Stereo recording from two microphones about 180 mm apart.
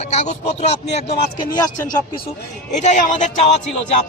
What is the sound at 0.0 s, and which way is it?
Speech, 40° left (ahead or behind).